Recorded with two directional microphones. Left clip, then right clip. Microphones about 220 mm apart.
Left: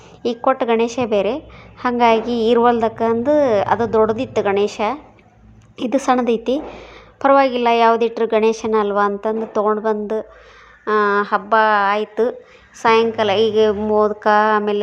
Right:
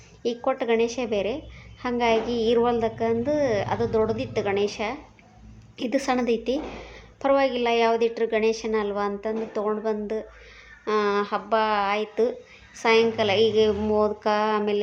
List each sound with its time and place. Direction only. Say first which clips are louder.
0.2 s a woman's voice: left 8 dB; 20° left (ahead or behind)